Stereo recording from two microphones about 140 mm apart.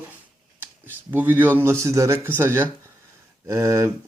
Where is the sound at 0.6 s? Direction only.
15° right (ahead or behind).